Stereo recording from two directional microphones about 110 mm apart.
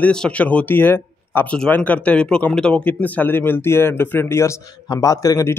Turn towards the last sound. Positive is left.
turn(degrees=30)  # may be behind; listen again after turning